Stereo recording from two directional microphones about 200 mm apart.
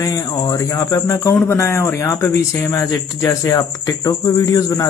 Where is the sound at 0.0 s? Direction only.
20° left (ahead or behind).